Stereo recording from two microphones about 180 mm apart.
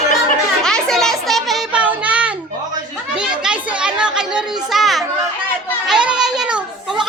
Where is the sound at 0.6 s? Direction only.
5° left (ahead or behind).